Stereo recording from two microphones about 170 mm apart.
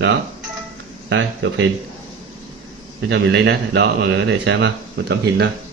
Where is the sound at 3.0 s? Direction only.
90° right.